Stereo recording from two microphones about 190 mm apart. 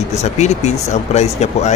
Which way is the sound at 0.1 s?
35° left (ahead or behind).